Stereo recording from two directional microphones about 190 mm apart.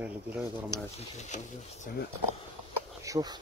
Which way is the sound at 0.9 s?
35° left (ahead or behind).